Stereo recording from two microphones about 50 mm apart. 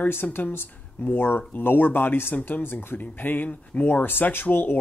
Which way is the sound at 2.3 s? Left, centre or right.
Left.